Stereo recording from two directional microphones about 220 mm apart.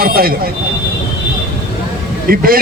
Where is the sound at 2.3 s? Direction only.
40° right (ahead or behind).